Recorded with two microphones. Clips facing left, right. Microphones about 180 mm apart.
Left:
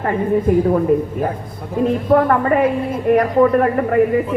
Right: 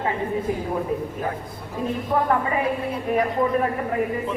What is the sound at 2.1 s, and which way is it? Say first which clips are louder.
A woman's voice: left 7 dB; 65° left (ahead or behind).